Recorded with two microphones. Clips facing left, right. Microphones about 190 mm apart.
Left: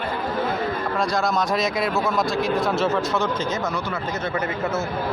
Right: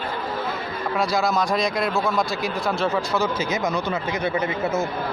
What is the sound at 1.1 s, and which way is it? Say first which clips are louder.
Speech: right 1 dB; centre (ahead or behind).